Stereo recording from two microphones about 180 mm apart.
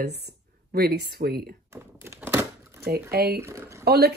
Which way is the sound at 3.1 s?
60° right (ahead or behind).